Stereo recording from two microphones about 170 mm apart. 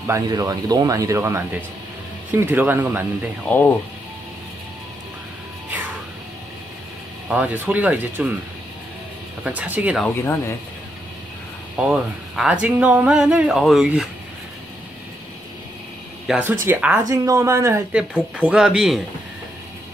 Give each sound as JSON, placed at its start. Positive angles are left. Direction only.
{"t": 0.0, "sound": "speech", "side_deg": -20}
{"t": 3.4, "sound": "speech", "side_deg": 10}
{"t": 7.2, "sound": "speech", "side_deg": -10}
{"t": 9.4, "sound": "speech", "side_deg": -10}
{"t": 11.7, "sound": "speech", "side_deg": -5}
{"t": 16.3, "sound": "speech", "side_deg": -10}
{"t": 17.9, "sound": "speech", "side_deg": -5}